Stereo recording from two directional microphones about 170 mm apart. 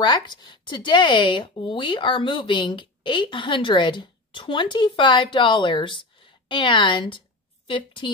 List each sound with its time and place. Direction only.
0.0 s speech: 25° left (ahead or behind)